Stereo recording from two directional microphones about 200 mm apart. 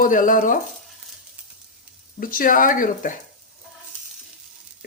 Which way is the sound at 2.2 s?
45° left (ahead or behind).